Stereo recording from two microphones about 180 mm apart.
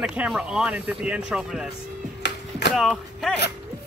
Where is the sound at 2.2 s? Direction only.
75° left (ahead or behind).